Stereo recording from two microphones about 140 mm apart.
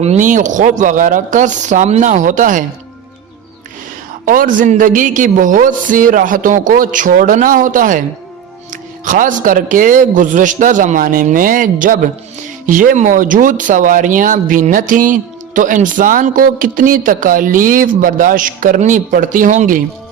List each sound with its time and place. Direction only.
0.0 s speech: 55° right (ahead or behind)
4.3 s speech: 75° right (ahead or behind)
9.0 s speech: 70° right (ahead or behind)